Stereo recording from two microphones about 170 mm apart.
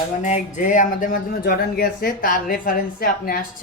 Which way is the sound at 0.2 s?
45° left (ahead or behind).